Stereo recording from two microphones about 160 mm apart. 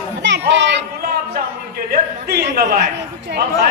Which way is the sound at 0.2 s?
90° right.